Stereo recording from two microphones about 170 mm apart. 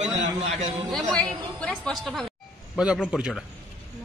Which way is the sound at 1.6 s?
5° left (ahead or behind).